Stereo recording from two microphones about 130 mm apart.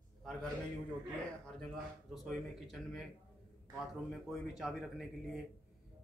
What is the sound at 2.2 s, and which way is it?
Speech, centre (ahead or behind).